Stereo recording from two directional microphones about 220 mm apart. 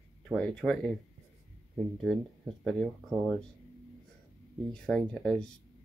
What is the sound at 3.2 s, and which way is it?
Speech, 5° left (ahead or behind).